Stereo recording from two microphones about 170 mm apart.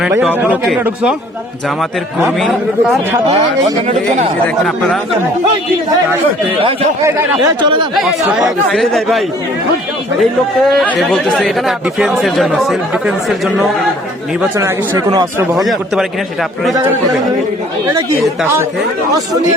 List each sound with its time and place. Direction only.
0.2 s speech: 10° right (ahead or behind)
4.4 s speech: 5° left (ahead or behind)
7.0 s speech: 20° right (ahead or behind)
7.9 s speech: centre (ahead or behind)
14.6 s speech: 20° right (ahead or behind)
15.5 s speech: centre (ahead or behind)